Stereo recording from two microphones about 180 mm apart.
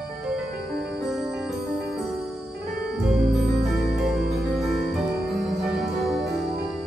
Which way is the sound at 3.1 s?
Centre (ahead or behind).